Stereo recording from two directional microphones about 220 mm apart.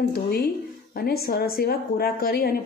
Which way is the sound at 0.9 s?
45° left (ahead or behind).